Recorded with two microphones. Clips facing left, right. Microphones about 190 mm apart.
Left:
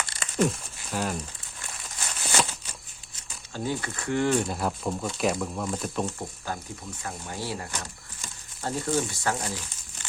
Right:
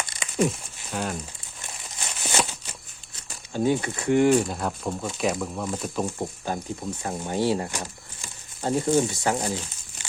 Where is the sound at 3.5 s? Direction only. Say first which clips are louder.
Right 7 dB; 20° right (ahead or behind).